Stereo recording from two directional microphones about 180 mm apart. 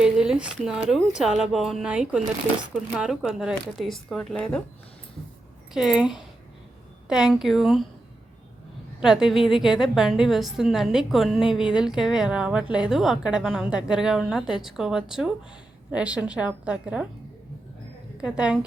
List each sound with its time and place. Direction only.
0.0 s a woman's voice: 5° right (ahead or behind)
5.7 s a woman's voice: 5° right (ahead or behind)
9.0 s a woman's voice: 5° right (ahead or behind)
18.2 s a woman's voice: 5° right (ahead or behind)